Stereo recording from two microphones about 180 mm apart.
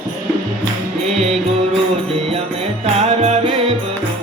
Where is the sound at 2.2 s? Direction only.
35° right (ahead or behind).